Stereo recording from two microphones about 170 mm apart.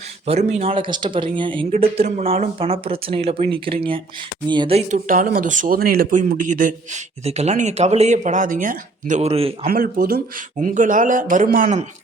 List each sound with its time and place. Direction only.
0.3 s speech: 40° right (ahead or behind)
4.9 s speech: 55° right (ahead or behind); by 9.6 s 35° right (ahead or behind)
9.6 s speech: 60° right (ahead or behind)